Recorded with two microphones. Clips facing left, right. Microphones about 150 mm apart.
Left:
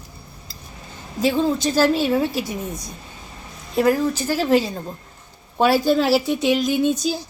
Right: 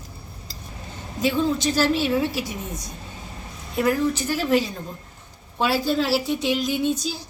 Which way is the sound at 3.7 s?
35° left (ahead or behind).